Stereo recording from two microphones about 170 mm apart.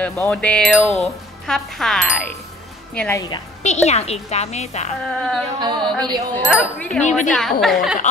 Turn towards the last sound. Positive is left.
turn(degrees=0)  # may be behind; listen again after turning